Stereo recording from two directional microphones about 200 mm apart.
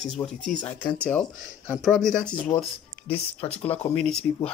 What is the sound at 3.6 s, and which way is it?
Speech, 30° left (ahead or behind).